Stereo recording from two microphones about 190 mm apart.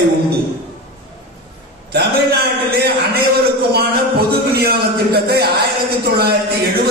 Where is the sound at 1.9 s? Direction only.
55° right (ahead or behind).